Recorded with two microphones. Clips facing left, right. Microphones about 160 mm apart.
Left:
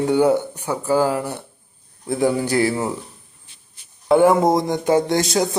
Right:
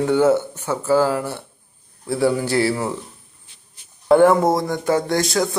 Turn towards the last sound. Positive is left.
turn(degrees=20)  # may be behind; listen again after turning